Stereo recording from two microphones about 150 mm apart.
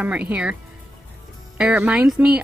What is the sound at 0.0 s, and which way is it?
Speech, 10° right (ahead or behind).